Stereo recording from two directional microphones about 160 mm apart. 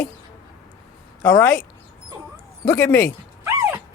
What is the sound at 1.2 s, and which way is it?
Speech, 10° left (ahead or behind).